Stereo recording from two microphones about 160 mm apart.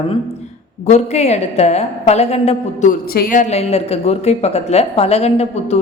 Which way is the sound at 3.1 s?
65° left (ahead or behind).